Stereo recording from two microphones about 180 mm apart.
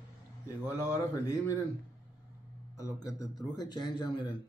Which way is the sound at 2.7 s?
20° left (ahead or behind).